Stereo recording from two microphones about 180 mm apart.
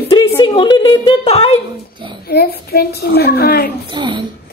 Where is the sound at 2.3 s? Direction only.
60° left (ahead or behind).